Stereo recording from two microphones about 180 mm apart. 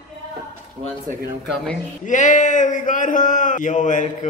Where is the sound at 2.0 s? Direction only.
45° left (ahead or behind).